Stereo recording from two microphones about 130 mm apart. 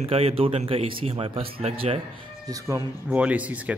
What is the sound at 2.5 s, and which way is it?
Speech, 25° right (ahead or behind).